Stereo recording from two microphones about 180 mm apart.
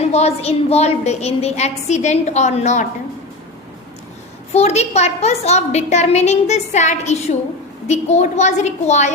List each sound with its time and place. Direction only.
0.1 s a woman's voice: 35° left (ahead or behind)
4.5 s a woman's voice: 35° left (ahead or behind)